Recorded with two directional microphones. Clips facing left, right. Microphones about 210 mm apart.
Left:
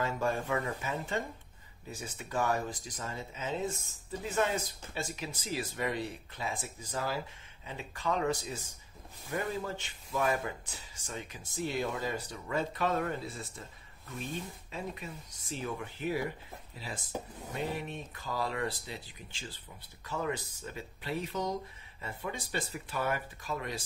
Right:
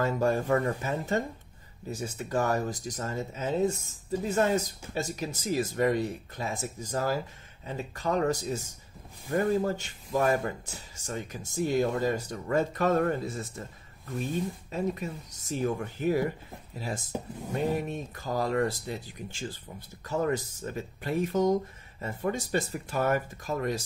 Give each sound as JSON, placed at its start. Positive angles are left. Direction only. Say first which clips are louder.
{"t": 0.0, "sound": "speech", "louder": "right 6 dB", "side_deg": -40}
{"t": 14.7, "sound": "speech", "louder": "right 7 dB", "side_deg": -40}